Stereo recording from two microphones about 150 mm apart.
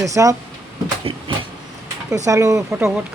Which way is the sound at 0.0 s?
20° right (ahead or behind).